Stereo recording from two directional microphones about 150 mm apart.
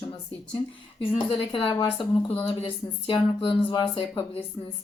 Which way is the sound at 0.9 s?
35° left (ahead or behind).